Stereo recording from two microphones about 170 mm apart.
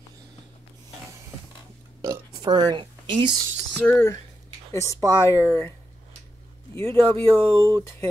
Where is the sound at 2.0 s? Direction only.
20° right (ahead or behind).